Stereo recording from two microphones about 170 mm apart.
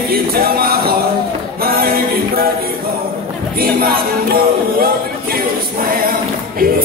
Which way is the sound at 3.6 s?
60° right (ahead or behind).